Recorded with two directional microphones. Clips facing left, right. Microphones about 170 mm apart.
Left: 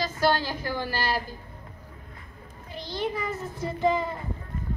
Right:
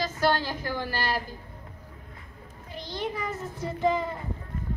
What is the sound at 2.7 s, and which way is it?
Speech, 35° left (ahead or behind).